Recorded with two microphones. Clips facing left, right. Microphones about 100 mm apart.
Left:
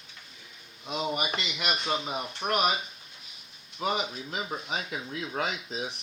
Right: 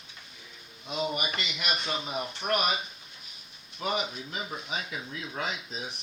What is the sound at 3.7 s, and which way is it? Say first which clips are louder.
Speech: left 1 dB; 35° left (ahead or behind).